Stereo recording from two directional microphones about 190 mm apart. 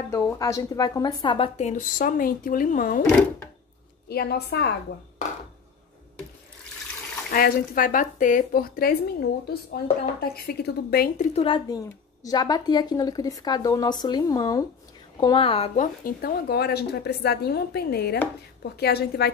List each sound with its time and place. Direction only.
0.1 s a woman's voice: 15° left (ahead or behind); by 3.0 s 45° left (ahead or behind)
4.1 s a woman's voice: 55° left (ahead or behind)
7.2 s speech: 50° left (ahead or behind)
10.2 s a woman's voice: 55° left (ahead or behind)
11.3 s a woman's voice: 25° left (ahead or behind); by 19.3 s 55° left (ahead or behind)